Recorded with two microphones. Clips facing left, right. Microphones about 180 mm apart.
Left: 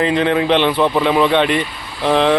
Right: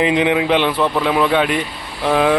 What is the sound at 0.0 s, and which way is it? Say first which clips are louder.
Speech: even; 15° right (ahead or behind).